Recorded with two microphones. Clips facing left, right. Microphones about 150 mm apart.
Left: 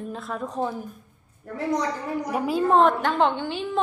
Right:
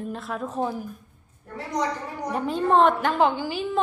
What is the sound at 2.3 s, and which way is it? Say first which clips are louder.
A woman's voice: even; 5° left (ahead or behind).